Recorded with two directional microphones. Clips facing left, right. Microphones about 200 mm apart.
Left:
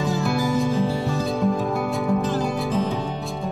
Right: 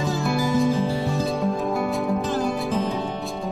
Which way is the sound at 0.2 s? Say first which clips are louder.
Right 3 dB; centre (ahead or behind).